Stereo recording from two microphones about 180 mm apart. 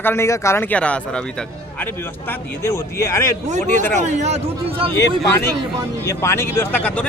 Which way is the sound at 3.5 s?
45° right (ahead or behind).